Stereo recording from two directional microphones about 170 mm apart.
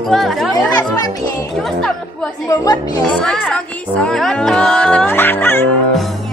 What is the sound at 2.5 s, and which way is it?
Speech, 20° left (ahead or behind).